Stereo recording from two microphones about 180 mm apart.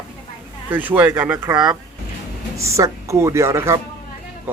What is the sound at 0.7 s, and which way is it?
Speech, 10° right (ahead or behind).